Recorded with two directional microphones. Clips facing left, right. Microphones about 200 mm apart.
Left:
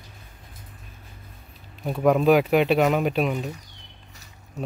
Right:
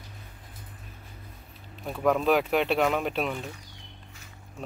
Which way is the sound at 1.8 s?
10° left (ahead or behind).